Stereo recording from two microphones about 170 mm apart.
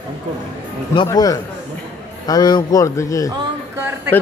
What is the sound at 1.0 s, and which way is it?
A man's voice, 20° left (ahead or behind).